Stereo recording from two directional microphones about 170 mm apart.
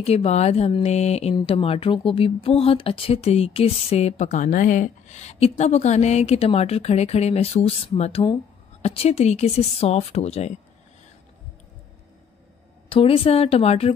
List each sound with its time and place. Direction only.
0.0 s speech: 35° left (ahead or behind)
12.9 s speech: 35° left (ahead or behind)